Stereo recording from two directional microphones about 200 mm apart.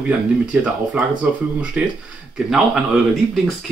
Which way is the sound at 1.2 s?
5° right (ahead or behind).